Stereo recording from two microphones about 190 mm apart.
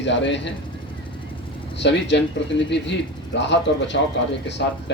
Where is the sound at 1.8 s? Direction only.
65° left (ahead or behind).